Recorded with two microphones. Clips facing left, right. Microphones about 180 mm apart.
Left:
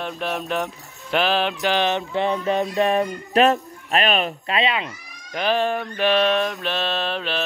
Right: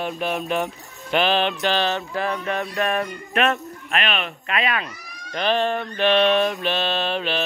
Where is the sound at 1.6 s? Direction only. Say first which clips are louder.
Left 1 dB; 15° left (ahead or behind).